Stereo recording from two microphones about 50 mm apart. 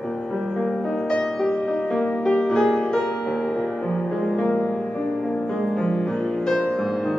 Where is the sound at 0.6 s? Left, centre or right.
Centre.